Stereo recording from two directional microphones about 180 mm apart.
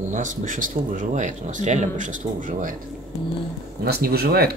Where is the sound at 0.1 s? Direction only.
45° right (ahead or behind).